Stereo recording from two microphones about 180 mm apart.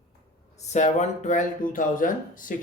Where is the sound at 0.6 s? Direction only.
40° left (ahead or behind).